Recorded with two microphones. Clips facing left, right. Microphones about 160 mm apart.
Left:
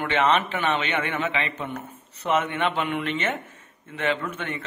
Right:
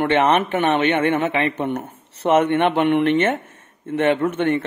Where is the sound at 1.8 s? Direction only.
75° right (ahead or behind).